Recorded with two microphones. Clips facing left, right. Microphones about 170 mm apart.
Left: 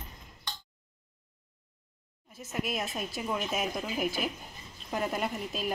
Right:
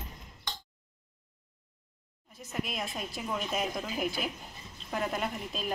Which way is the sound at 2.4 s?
5° left (ahead or behind).